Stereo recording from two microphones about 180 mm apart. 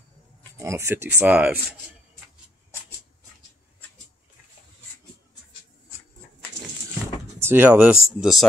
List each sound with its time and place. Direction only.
0.6 s speech: 15° right (ahead or behind)
7.3 s speech: 10° right (ahead or behind)